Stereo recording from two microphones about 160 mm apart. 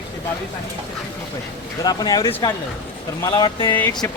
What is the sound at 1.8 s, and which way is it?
Speech, 25° left (ahead or behind).